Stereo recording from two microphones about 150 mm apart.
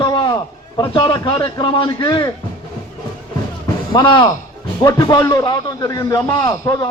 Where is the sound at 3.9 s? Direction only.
30° left (ahead or behind).